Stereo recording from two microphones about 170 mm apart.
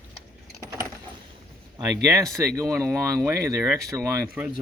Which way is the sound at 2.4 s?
20° right (ahead or behind).